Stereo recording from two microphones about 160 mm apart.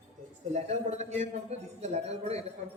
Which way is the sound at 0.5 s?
45° right (ahead or behind).